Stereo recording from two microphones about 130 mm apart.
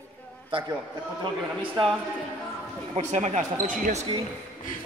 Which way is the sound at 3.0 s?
60° right (ahead or behind).